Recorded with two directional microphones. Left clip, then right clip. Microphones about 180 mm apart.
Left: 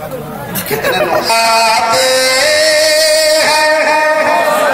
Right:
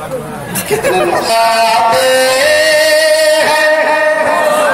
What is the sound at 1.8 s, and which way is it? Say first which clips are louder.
Music: right 2 dB; 55° right (ahead or behind).